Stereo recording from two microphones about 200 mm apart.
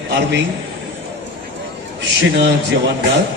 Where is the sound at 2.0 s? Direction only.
60° right (ahead or behind).